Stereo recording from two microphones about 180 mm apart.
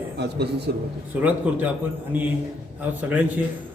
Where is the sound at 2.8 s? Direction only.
10° right (ahead or behind).